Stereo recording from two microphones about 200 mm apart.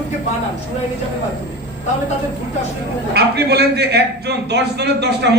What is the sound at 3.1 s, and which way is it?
A man's voice, 55° right (ahead or behind).